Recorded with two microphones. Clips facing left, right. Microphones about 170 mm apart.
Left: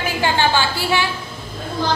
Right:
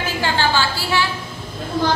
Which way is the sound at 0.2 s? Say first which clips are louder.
Left 2 dB; 20° left (ahead or behind).